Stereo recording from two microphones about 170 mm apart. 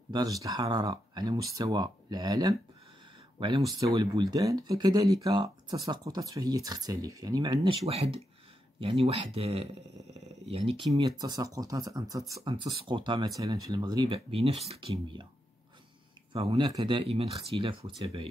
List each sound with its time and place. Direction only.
0.1 s speech: 20° right (ahead or behind)
10.9 s speech: 20° right (ahead or behind)
16.3 s speech: 35° right (ahead or behind)